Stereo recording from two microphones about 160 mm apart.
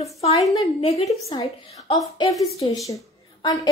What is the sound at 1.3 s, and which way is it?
Speech, 20° left (ahead or behind).